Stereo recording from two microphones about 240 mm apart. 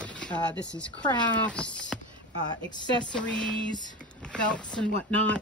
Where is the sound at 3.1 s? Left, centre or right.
Centre.